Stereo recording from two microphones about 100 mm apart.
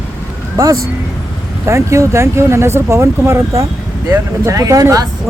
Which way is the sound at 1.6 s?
30° right (ahead or behind).